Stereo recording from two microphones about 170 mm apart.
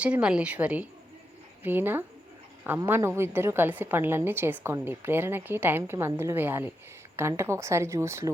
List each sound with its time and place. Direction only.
0.0 s a woman's voice: 5° right (ahead or behind)